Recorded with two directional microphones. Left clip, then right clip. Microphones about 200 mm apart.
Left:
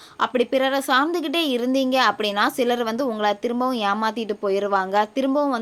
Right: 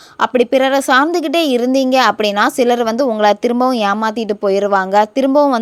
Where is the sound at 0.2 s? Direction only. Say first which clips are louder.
Right 8 dB; 35° right (ahead or behind).